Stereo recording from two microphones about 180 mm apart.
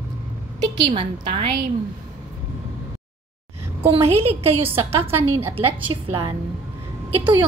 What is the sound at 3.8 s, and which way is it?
Speech, 35° right (ahead or behind).